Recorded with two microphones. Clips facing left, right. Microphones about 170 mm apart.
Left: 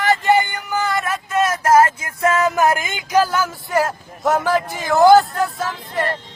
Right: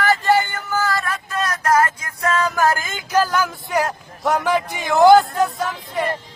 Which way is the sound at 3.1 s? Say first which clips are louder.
Left 1 dB; 10° left (ahead or behind).